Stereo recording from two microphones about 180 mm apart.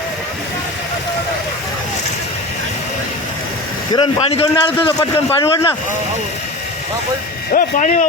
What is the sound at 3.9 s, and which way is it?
A man's voice, 30° left (ahead or behind).